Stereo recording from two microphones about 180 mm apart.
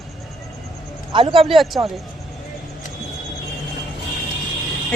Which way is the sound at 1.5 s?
Centre (ahead or behind).